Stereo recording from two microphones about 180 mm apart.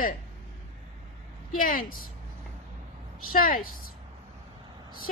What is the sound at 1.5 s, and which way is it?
Speech, 50° left (ahead or behind).